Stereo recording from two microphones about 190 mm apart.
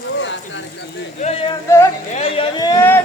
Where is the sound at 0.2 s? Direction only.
70° left (ahead or behind).